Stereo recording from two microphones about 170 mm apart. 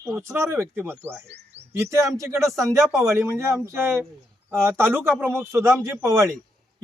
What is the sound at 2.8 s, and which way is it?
Speech, centre (ahead or behind).